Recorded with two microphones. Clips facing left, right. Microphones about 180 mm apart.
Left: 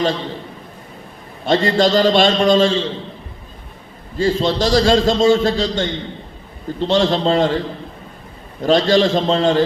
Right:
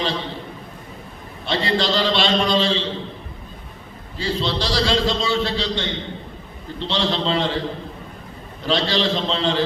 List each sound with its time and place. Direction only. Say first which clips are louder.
1.5 s a man's voice: left 7 dB; 45° left (ahead or behind)
4.2 s a man's voice: left 7 dB; 45° left (ahead or behind)
8.6 s a man's voice: left 7 dB; 45° left (ahead or behind)